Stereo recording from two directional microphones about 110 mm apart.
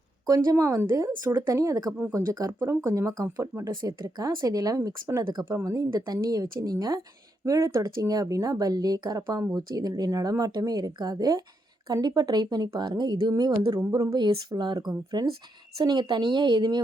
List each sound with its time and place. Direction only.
0.3 s speech: 30° right (ahead or behind)
3.7 s speech: 40° right (ahead or behind)